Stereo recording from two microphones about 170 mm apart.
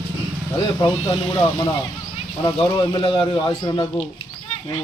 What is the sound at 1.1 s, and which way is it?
Speech, 30° left (ahead or behind).